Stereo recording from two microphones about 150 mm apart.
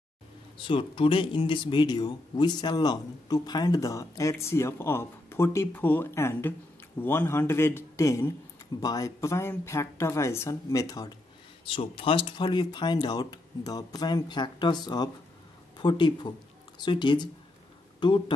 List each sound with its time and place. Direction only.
0.6 s a man's voice: 35° left (ahead or behind)
11.6 s speech: 35° left (ahead or behind)